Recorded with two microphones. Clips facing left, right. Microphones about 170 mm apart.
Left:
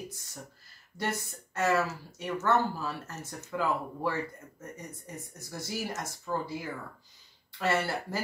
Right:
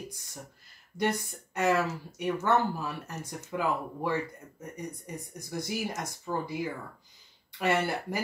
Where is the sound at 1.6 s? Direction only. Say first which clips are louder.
Right 1 dB; 15° right (ahead or behind).